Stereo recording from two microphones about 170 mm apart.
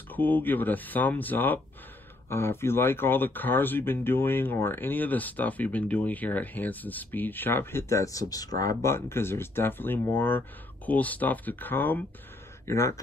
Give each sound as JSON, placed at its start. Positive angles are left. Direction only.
{"t": 0.1, "sound": "speech", "side_deg": 10}